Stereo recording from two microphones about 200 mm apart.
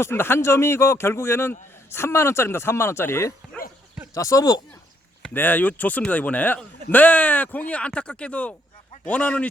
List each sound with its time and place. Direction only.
0.0 s speech: 10° left (ahead or behind)